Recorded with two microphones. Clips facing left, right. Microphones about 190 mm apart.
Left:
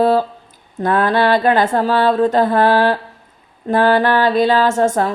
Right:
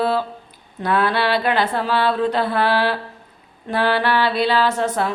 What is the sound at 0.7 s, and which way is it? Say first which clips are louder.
Speech: left 4 dB; 45° left (ahead or behind).